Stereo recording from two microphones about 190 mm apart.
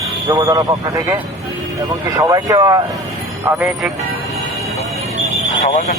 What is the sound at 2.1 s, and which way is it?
Speech, 20° right (ahead or behind).